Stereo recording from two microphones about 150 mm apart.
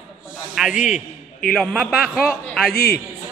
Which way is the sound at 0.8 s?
60° left (ahead or behind).